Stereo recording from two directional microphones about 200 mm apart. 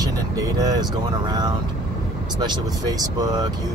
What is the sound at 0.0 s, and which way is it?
Speech, 20° right (ahead or behind).